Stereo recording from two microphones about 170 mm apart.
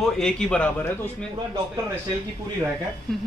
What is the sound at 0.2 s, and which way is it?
Speech, 5° left (ahead or behind).